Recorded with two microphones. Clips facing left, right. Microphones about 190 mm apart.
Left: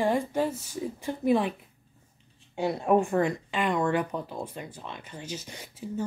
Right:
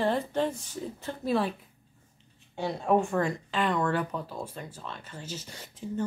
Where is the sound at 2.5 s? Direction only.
10° left (ahead or behind).